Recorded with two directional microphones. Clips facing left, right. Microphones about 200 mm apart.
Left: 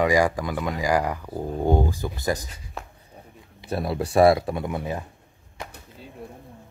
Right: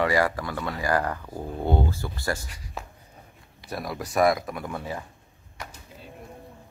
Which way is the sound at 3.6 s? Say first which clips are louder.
Left 6 dB; 30° left (ahead or behind).